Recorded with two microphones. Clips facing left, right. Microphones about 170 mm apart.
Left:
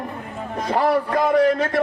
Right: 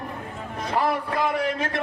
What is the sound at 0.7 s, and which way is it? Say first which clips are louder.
Speech: left 5 dB; 40° left (ahead or behind).